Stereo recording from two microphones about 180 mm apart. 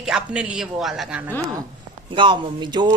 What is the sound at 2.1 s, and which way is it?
Speech, 25° right (ahead or behind).